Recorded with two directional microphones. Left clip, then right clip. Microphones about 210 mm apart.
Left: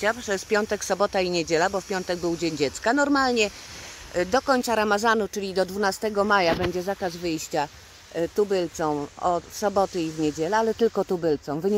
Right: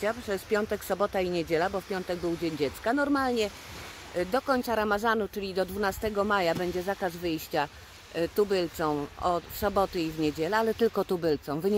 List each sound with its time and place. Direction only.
0.0 s speech: 20° left (ahead or behind)